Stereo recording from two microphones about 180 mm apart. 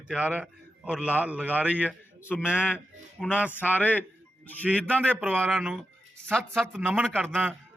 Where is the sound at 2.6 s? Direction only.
10° left (ahead or behind).